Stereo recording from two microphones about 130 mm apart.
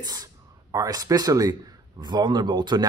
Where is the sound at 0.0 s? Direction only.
30° right (ahead or behind).